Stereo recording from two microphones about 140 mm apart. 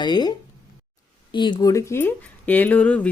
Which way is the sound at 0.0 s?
30° left (ahead or behind).